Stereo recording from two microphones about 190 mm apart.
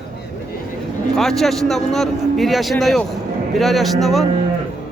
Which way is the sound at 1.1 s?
Centre (ahead or behind).